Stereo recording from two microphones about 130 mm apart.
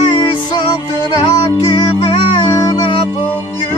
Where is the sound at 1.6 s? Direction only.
35° left (ahead or behind).